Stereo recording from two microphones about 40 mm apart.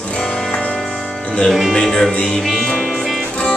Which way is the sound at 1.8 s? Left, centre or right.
Centre.